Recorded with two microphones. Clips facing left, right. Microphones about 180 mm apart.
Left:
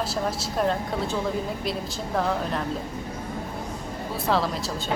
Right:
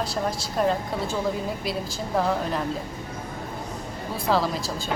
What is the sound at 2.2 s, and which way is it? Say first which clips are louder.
Speech: right 1 dB; centre (ahead or behind).